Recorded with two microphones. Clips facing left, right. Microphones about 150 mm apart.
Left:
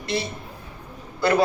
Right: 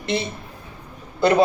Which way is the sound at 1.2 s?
20° right (ahead or behind).